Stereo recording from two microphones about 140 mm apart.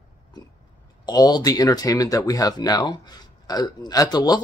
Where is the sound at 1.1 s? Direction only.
30° left (ahead or behind).